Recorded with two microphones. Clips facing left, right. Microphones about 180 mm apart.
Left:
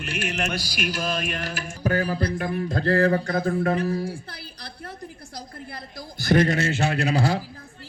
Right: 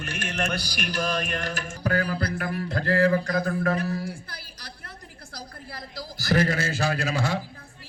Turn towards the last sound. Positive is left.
turn(degrees=30)  # may be behind; listen again after turning